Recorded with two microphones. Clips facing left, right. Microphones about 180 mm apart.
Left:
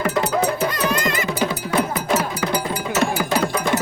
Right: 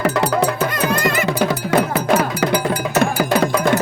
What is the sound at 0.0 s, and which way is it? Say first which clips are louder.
Music: right 3 dB; 75° right (ahead or behind).